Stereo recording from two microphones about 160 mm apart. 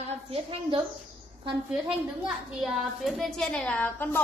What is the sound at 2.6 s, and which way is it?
A woman's voice, centre (ahead or behind).